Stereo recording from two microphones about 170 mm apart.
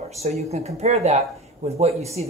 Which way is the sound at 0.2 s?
40° right (ahead or behind).